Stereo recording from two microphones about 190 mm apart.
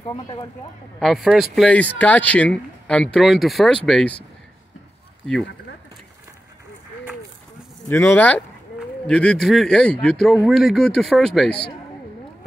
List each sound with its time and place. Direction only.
0.0 s speech: 20° left (ahead or behind)
0.9 s speech: centre (ahead or behind)
7.9 s speech: 10° left (ahead or behind)